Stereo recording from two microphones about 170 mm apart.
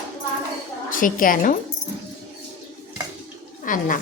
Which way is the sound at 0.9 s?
55° left (ahead or behind).